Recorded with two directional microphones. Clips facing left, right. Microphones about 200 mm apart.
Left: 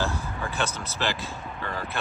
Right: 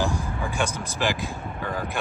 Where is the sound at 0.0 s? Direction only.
15° right (ahead or behind).